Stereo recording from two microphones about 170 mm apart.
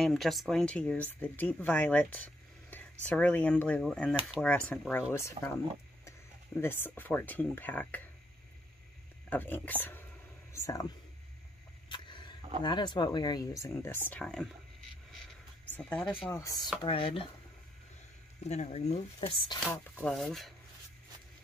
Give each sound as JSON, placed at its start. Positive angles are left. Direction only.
{"t": 0.0, "sound": "speech", "side_deg": 0}
{"t": 9.3, "sound": "speech", "side_deg": 10}
{"t": 11.9, "sound": "vehicle", "side_deg": 25}
{"t": 12.6, "sound": "speech", "side_deg": 25}
{"t": 15.7, "sound": "speech", "side_deg": 5}
{"t": 16.3, "sound": "speech", "side_deg": 20}
{"t": 16.8, "sound": "speech", "side_deg": 30}
{"t": 18.5, "sound": "speech", "side_deg": 40}
{"t": 20.0, "sound": "speech", "side_deg": 0}